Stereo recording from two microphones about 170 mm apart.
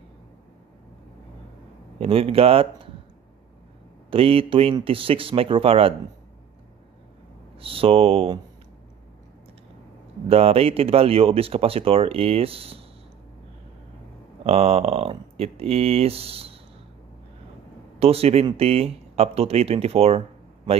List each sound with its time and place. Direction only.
2.0 s speech: 35° right (ahead or behind)
4.1 s speech: 35° right (ahead or behind)
7.5 s speech: 35° right (ahead or behind)
10.2 s speech: 35° right (ahead or behind)
14.4 s speech: 35° right (ahead or behind)
17.9 s speech: 35° right (ahead or behind)